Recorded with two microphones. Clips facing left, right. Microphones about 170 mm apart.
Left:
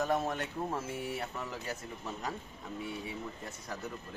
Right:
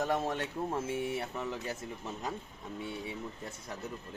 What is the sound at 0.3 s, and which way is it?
Speech, 25° right (ahead or behind).